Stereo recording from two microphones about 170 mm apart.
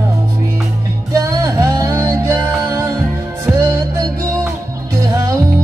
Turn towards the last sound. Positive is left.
turn(degrees=-20)  # may be behind; listen again after turning